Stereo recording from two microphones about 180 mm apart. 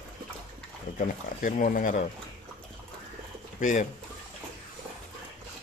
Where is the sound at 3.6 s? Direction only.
45° left (ahead or behind).